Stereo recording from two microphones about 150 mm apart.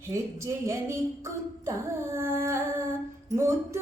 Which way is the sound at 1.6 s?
15° right (ahead or behind).